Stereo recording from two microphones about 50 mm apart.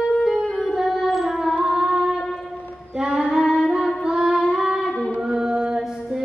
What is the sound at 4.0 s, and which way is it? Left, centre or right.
Child singing, centre.